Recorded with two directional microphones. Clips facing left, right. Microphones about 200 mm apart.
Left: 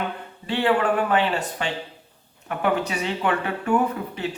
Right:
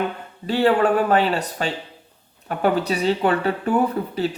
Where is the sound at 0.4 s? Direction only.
40° right (ahead or behind).